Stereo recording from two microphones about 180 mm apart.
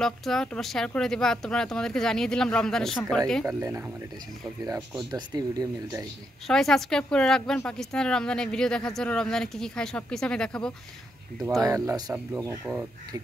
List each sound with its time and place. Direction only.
0.0 s a woman's voice: centre (ahead or behind)
3.4 s speech: 15° right (ahead or behind)
5.1 s speech: 20° right (ahead or behind)
6.4 s a woman's voice: centre (ahead or behind)
11.6 s speech: 20° right (ahead or behind)